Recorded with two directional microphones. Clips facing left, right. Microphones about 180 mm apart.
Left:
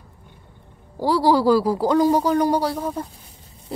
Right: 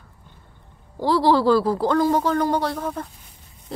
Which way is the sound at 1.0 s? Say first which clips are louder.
Even; 10° left (ahead or behind).